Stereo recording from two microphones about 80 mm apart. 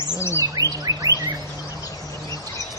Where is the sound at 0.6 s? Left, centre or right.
Right.